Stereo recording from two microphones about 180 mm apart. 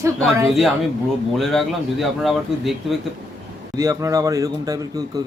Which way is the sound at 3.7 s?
15° right (ahead or behind).